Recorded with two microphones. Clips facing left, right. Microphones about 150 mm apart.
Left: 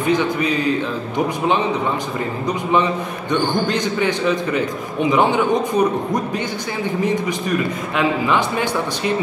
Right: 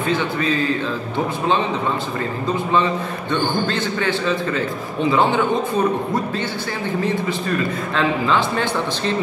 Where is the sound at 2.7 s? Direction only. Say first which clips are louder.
Left 3 dB; 15° left (ahead or behind).